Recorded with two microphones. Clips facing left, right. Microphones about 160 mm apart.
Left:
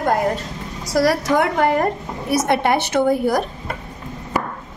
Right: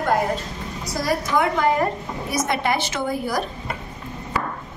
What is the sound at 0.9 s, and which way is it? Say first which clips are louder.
A woman's voice: left 5 dB; 90° left.